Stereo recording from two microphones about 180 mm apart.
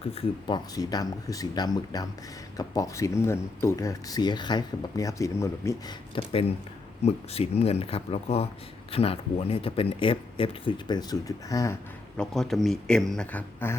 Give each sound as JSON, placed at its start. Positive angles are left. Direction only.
{"t": 0.0, "sound": "speech", "side_deg": 30}
{"t": 6.1, "sound": "speech", "side_deg": 30}
{"t": 12.1, "sound": "speech", "side_deg": 5}